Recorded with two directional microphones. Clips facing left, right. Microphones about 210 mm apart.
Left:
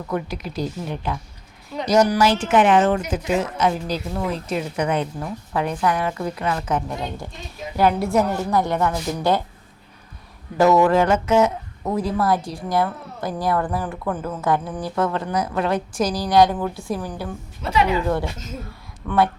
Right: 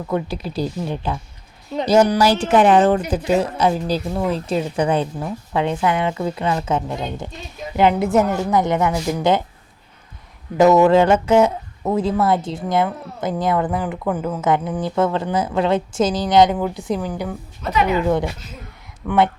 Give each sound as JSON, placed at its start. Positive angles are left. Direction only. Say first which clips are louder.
{"t": 0.1, "sound": "a woman's voice", "louder": "right 3 dB", "side_deg": -30}
{"t": 10.6, "sound": "speech", "louder": "right 3 dB", "side_deg": -20}
{"t": 17.6, "sound": "a woman's voice", "louder": "right 1 dB", "side_deg": 30}
{"t": 19.0, "sound": "speech", "louder": "right 2 dB", "side_deg": -20}